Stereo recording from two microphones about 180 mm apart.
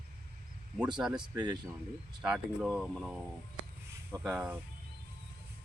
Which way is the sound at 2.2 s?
5° right (ahead or behind).